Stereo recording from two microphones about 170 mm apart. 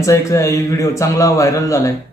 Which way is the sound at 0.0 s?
20° left (ahead or behind).